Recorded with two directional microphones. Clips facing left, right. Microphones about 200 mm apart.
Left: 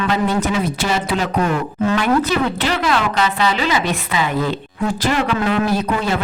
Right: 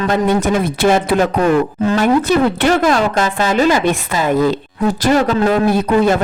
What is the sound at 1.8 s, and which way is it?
Speech, 40° right (ahead or behind).